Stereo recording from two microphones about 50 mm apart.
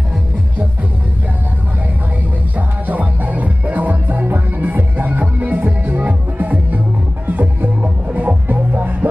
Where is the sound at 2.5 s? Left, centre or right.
Right.